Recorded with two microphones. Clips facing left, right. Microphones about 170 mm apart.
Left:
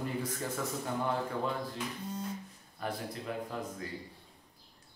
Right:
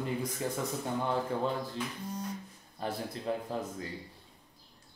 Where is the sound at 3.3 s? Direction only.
30° right (ahead or behind).